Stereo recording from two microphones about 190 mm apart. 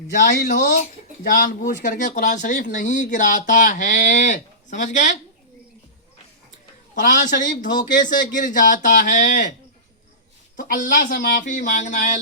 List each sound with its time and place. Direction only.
0.2 s speech: 60° left (ahead or behind)
1.2 s speech: 45° left (ahead or behind)
7.0 s speech: 45° left (ahead or behind)
10.6 s speech: 45° left (ahead or behind)